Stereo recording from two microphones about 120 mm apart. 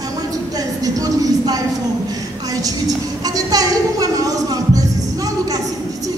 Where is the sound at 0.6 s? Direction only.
30° right (ahead or behind).